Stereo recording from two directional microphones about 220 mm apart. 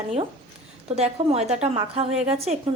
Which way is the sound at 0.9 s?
30° right (ahead or behind).